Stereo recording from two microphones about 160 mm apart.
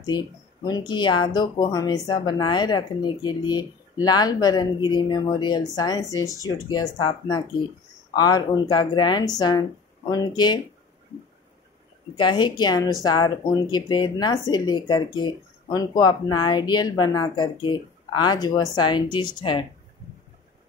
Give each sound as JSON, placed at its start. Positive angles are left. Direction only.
{"t": 0.7, "sound": "speech", "side_deg": 25}
{"t": 12.2, "sound": "speech", "side_deg": 30}